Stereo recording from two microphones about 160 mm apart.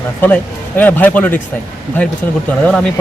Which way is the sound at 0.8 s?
10° left (ahead or behind).